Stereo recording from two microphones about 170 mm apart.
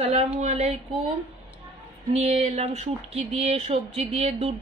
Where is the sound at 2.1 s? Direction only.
35° right (ahead or behind).